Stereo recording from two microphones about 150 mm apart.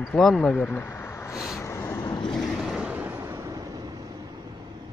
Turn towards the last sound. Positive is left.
turn(degrees=-25)  # may be behind; listen again after turning